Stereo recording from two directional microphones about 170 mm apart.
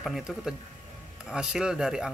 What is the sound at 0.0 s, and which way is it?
A man's voice, centre (ahead or behind).